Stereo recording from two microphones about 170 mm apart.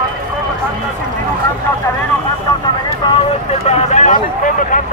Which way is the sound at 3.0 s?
25° left (ahead or behind).